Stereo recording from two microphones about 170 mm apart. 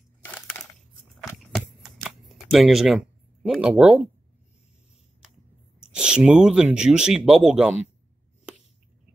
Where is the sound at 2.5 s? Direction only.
Centre (ahead or behind).